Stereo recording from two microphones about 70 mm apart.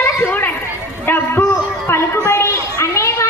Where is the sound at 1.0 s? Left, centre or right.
Left.